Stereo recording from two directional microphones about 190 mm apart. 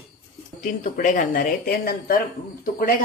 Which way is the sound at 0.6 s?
40° left (ahead or behind).